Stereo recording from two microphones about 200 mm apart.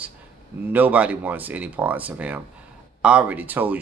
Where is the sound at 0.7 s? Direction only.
5° right (ahead or behind).